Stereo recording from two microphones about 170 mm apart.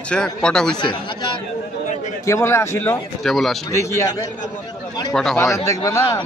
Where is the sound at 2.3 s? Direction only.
15° left (ahead or behind).